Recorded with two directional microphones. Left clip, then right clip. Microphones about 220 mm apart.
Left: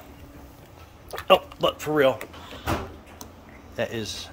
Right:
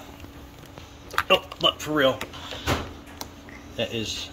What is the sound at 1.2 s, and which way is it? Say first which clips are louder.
Speech: left 2 dB; 25° left (ahead or behind).